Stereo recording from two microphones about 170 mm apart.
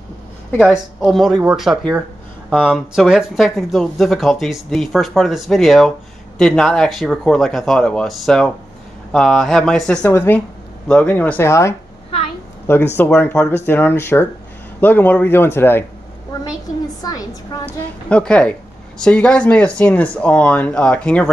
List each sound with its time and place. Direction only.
0.6 s speech: centre (ahead or behind)
17.0 s a sound: 20° left (ahead or behind)
18.0 s speech: 5° left (ahead or behind)